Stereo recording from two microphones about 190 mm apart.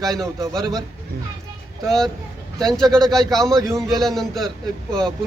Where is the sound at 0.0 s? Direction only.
Centre (ahead or behind).